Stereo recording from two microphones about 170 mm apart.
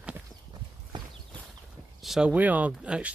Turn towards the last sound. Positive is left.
turn(degrees=-5)  # may be behind; listen again after turning